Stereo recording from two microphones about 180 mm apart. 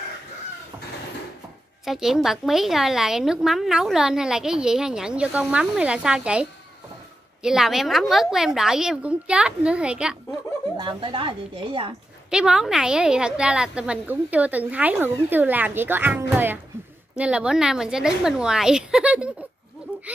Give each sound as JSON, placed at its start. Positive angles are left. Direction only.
{"t": 1.9, "sound": "a woman's voice", "side_deg": 0}
{"t": 7.4, "sound": "a woman's voice", "side_deg": 0}
{"t": 10.8, "sound": "a woman's voice", "side_deg": -25}
{"t": 12.3, "sound": "a woman's voice", "side_deg": -5}